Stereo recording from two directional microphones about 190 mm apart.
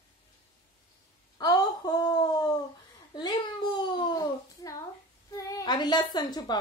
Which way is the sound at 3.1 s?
20° left (ahead or behind).